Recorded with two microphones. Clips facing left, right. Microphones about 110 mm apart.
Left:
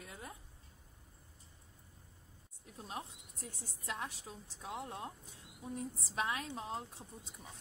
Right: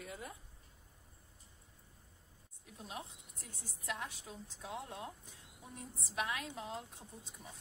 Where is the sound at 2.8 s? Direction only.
35° left (ahead or behind).